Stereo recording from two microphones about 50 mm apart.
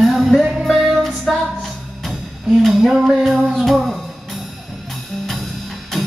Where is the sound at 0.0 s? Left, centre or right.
Centre.